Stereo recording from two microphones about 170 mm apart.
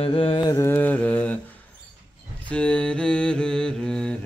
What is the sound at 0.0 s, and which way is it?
Mantra, 30° left (ahead or behind).